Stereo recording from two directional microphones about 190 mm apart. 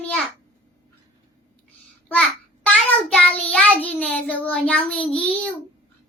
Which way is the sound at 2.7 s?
5° left (ahead or behind).